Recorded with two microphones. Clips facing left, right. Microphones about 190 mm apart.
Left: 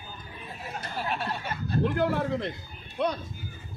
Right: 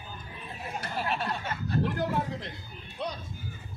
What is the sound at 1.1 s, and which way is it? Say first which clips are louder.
Speech: even; centre (ahead or behind).